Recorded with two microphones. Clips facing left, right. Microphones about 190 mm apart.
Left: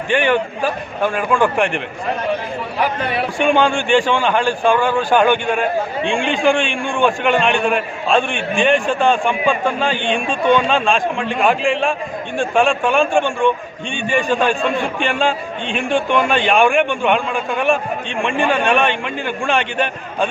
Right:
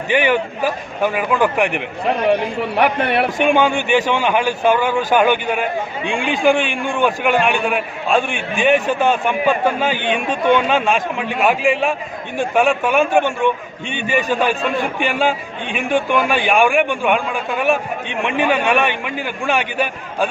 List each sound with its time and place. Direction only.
0.1 s speech: 10° right (ahead or behind)
2.2 s a man's voice: 65° right (ahead or behind)
3.4 s a man's voice: 10° right (ahead or behind)